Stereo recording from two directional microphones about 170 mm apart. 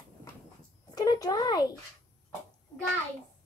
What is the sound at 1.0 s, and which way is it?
Speech, 25° left (ahead or behind).